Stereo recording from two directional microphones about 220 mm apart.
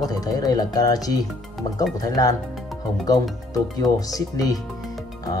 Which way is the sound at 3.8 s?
15° left (ahead or behind).